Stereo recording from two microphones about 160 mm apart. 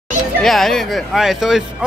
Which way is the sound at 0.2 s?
Centre (ahead or behind).